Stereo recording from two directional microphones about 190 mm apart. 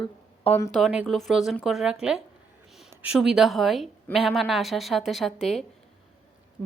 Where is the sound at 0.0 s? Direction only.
30° left (ahead or behind).